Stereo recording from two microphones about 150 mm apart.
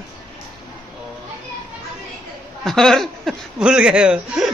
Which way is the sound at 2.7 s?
Centre (ahead or behind).